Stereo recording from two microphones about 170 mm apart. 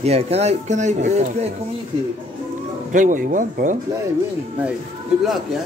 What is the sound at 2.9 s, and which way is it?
Speech, 50° right (ahead or behind).